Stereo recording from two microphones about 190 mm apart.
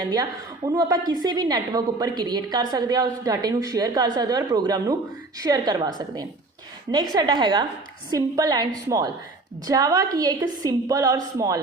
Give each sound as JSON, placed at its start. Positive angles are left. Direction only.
{"t": 0.0, "sound": "a woman's voice", "side_deg": -20}
{"t": 7.1, "sound": "a woman's voice", "side_deg": -20}